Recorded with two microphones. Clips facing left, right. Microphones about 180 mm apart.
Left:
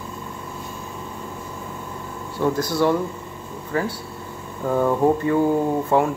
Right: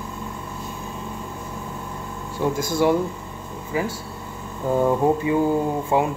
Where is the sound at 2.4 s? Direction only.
10° right (ahead or behind).